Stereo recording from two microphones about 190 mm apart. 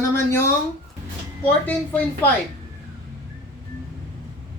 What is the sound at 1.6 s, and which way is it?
Speech, 10° left (ahead or behind).